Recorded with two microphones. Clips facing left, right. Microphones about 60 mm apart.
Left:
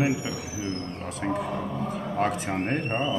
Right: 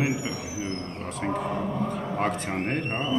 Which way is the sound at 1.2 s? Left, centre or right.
Centre.